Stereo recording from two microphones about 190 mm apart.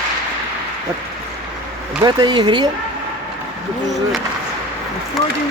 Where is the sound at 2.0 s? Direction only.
20° right (ahead or behind).